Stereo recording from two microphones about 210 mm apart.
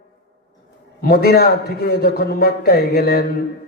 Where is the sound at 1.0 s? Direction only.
45° left (ahead or behind).